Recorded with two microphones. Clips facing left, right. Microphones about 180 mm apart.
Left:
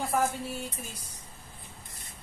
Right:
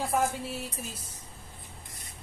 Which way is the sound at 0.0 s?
Centre (ahead or behind).